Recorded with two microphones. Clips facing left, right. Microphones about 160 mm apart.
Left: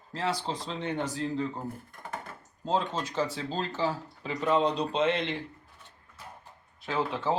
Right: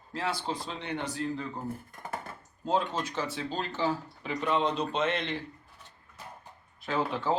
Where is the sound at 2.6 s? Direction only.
30° left (ahead or behind).